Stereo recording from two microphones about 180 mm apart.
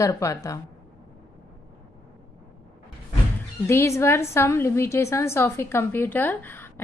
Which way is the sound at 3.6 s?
15° left (ahead or behind).